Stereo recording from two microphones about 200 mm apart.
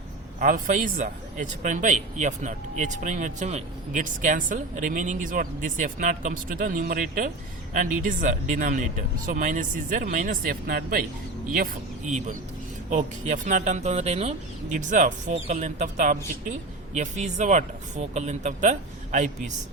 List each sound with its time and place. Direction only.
0.3 s speech: 40° right (ahead or behind)